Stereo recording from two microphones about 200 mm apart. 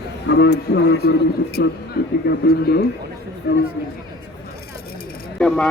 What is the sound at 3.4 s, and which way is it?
Speech, 65° left (ahead or behind).